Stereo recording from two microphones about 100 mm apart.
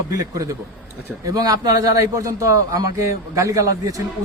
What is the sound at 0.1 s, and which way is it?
A man's voice, 35° right (ahead or behind).